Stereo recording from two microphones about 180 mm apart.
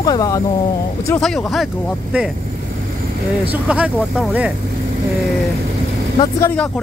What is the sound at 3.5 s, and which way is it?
Speech, 5° right (ahead or behind).